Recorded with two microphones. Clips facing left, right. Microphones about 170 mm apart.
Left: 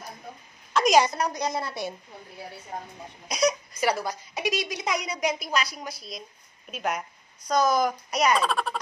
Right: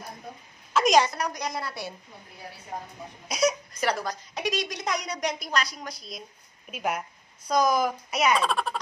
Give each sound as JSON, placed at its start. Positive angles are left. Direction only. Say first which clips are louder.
{"t": 0.7, "sound": "a sound", "louder": "left 1 dB", "side_deg": 0}
{"t": 1.0, "sound": "a woman's voice", "louder": "left 3 dB", "side_deg": 25}
{"t": 3.3, "sound": "a woman's voice", "louder": "even", "side_deg": -5}